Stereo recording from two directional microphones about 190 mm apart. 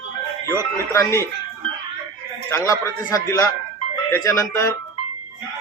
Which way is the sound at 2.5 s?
15° left (ahead or behind).